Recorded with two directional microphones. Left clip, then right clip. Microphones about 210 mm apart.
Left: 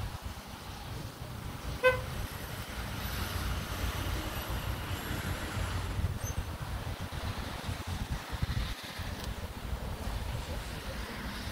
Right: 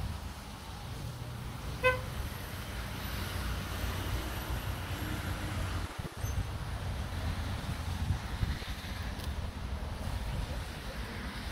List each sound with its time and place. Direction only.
1.8 s vehicle: 45° left (ahead or behind)